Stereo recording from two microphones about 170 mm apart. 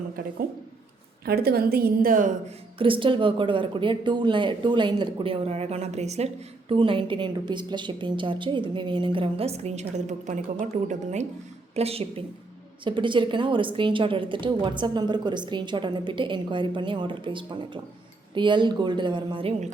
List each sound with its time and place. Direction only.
1.2 s a woman's voice: 65° right (ahead or behind)
2.7 s speech: 30° right (ahead or behind)